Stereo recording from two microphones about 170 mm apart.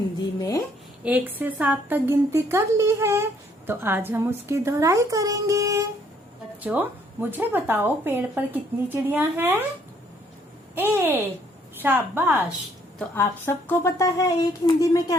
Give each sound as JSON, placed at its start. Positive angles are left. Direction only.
{"t": 0.3, "sound": "speech", "side_deg": 20}
{"t": 1.0, "sound": "speech", "side_deg": -10}
{"t": 10.8, "sound": "speech", "side_deg": -10}
{"t": 13.0, "sound": "speech", "side_deg": 15}